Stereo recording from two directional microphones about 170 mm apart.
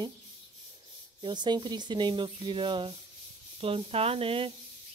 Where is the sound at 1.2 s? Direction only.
25° right (ahead or behind).